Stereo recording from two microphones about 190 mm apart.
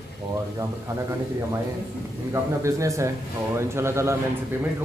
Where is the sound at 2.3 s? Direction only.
15° right (ahead or behind).